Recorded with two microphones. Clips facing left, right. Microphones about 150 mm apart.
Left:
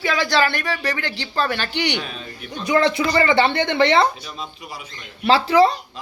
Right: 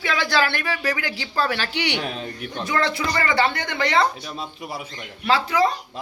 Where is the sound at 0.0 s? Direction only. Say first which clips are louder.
Left 3 dB; centre (ahead or behind).